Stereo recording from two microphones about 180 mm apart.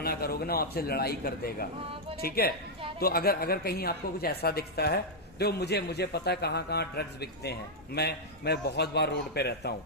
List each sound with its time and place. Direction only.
0.0 s a man's voice: 60° left (ahead or behind)